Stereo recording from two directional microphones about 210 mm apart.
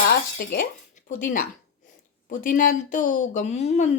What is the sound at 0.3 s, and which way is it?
Speech, 50° left (ahead or behind).